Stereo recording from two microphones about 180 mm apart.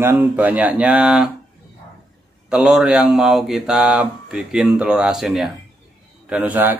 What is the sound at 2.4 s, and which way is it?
Speech, 5° right (ahead or behind).